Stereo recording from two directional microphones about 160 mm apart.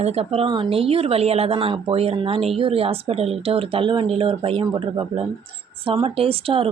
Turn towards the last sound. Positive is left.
turn(degrees=-35)  # may be behind; listen again after turning